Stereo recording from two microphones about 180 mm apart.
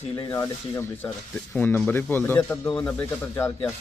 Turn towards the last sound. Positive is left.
turn(degrees=15)  # may be behind; listen again after turning